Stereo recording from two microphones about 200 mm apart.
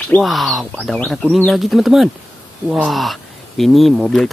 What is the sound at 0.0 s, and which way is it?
Speech, 5° left (ahead or behind).